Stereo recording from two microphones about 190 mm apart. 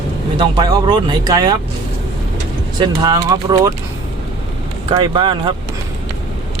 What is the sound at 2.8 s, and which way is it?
Speech, 20° right (ahead or behind).